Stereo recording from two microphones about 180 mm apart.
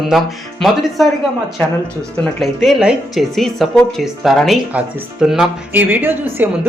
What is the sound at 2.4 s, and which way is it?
Speech, centre (ahead or behind).